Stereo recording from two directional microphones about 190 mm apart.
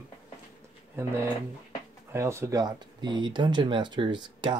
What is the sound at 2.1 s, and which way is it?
Speech, 15° right (ahead or behind).